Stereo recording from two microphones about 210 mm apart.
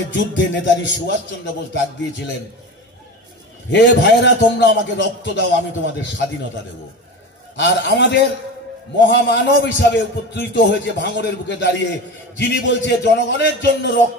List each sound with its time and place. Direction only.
0.1 s a man's voice: 55° left (ahead or behind)
3.7 s a man's voice: 55° left (ahead or behind)
7.5 s a man's voice: 55° left (ahead or behind)